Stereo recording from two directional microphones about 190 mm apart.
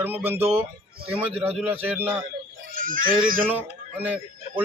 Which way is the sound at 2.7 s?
45° right (ahead or behind).